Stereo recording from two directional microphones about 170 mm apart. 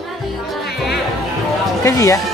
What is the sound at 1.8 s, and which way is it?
Speech, 15° left (ahead or behind).